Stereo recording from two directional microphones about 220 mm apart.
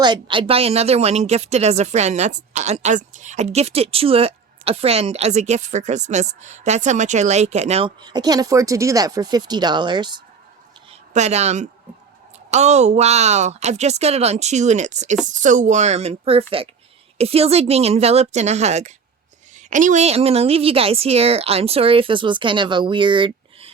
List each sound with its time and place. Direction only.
0.0 s speech: 20° right (ahead or behind)
11.1 s speech: 30° right (ahead or behind)